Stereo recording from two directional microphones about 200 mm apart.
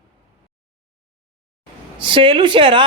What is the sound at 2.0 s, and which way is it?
Speech, 25° right (ahead or behind).